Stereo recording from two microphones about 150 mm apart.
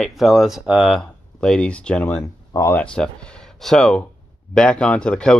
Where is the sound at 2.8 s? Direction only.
5° left (ahead or behind).